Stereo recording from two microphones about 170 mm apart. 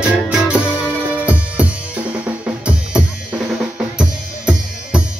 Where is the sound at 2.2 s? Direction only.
5° right (ahead or behind).